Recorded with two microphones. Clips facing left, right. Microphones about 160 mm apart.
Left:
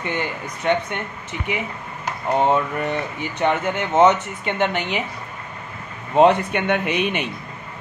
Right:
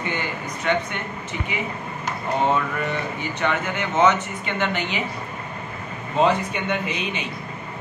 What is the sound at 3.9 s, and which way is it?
A man's voice, 60° left (ahead or behind).